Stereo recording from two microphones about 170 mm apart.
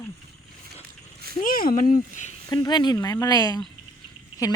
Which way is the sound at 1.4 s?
55° left (ahead or behind).